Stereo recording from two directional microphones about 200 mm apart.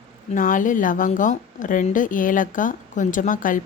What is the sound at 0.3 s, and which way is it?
A woman's voice, 40° left (ahead or behind).